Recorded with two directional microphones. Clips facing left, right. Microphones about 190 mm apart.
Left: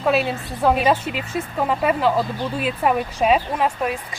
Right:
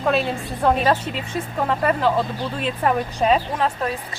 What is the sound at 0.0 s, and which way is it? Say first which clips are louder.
A woman's voice: left 1 dB; 5° left (ahead or behind).